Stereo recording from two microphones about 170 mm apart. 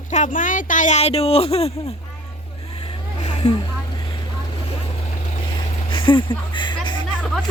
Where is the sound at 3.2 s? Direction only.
40° left (ahead or behind).